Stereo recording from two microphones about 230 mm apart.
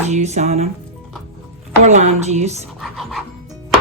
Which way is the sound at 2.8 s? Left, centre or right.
Centre.